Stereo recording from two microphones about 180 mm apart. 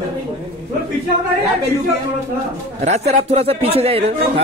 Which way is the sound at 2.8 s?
35° right (ahead or behind).